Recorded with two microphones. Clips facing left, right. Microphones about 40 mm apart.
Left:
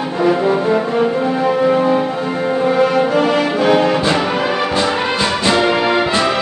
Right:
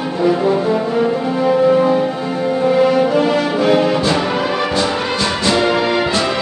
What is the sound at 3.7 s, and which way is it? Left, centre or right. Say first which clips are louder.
Music: even; centre.